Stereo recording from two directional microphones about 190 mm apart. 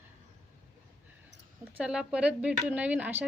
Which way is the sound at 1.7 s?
5° right (ahead or behind).